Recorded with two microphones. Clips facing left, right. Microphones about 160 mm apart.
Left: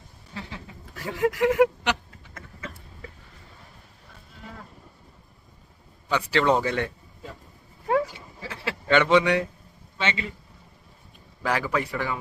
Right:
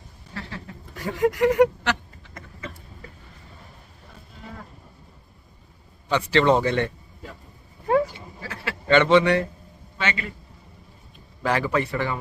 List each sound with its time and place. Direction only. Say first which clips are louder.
0.3 s duck: right 2 dB; 15° left (ahead or behind)
0.9 s speech: right 2 dB; centre (ahead or behind)
2.3 s a sound: right 2 dB; centre (ahead or behind)
6.1 s a man's voice: right 3 dB; 10° left (ahead or behind)
7.9 s sheep: right 3 dB; centre (ahead or behind)
8.9 s a man's voice: right 3 dB; 10° left (ahead or behind)
10.0 s a man's voice: even; 25° left (ahead or behind)
11.4 s a man's voice: right 3 dB; 5° left (ahead or behind)